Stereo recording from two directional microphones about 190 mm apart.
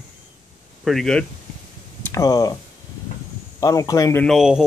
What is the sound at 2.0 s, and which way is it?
Speech, 15° left (ahead or behind).